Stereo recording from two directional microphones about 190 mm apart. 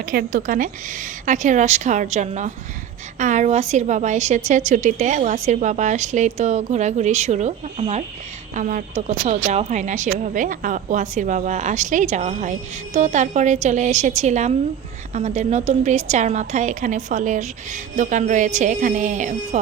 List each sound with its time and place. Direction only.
0.0 s a woman's voice: 50° right (ahead or behind)